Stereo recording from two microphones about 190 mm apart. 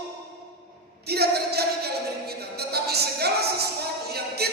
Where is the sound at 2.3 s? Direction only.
55° right (ahead or behind).